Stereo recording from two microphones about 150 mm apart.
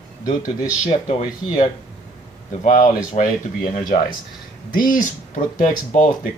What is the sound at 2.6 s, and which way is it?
Speech, 50° left (ahead or behind).